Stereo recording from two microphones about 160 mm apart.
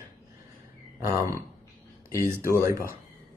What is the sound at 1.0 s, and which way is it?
Speech, 20° right (ahead or behind).